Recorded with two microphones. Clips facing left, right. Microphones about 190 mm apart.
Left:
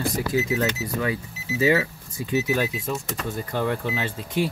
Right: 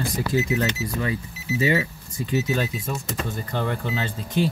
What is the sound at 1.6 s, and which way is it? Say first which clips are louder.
Speech: left 3 dB; 5° left (ahead or behind).